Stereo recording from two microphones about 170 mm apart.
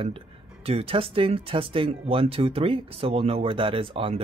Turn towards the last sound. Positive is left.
turn(degrees=-30)  # may be behind; listen again after turning